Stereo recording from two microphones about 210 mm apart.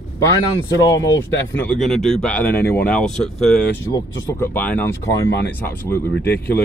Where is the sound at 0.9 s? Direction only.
60° left (ahead or behind).